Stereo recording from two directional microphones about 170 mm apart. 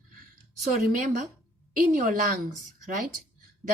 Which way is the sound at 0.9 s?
50° right (ahead or behind).